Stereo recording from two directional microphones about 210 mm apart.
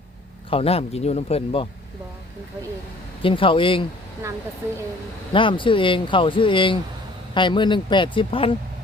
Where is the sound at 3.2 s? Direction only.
25° left (ahead or behind).